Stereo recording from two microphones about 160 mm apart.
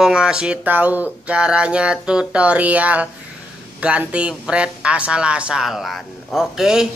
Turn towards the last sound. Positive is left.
turn(degrees=-5)  # may be behind; listen again after turning